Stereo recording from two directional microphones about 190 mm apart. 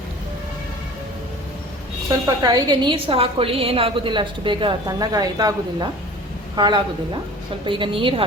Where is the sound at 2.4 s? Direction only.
20° right (ahead or behind).